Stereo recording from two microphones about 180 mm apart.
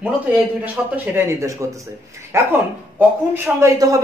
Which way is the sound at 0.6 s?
10° right (ahead or behind).